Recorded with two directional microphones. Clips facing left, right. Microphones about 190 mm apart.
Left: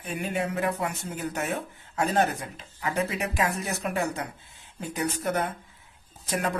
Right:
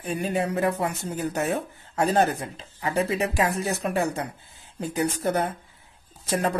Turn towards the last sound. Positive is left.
turn(degrees=-30)  # may be behind; listen again after turning